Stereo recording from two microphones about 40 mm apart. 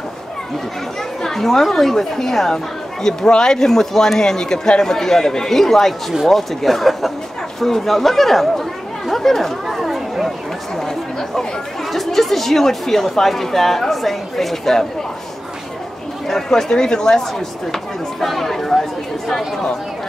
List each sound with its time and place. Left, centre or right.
1.2 s speech: centre
9.1 s chatter: centre
10.8 s speech: centre
16.3 s speech: centre
18.2 s speech: centre